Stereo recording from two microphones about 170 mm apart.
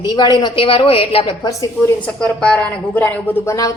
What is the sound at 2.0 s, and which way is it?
A woman's voice, 5° left (ahead or behind).